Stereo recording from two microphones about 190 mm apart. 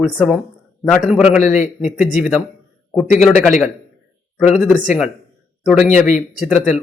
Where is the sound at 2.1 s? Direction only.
5° right (ahead or behind).